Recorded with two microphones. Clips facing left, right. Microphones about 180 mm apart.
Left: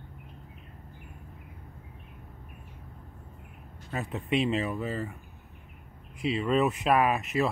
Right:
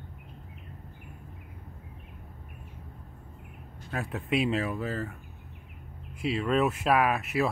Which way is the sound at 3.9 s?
Centre (ahead or behind).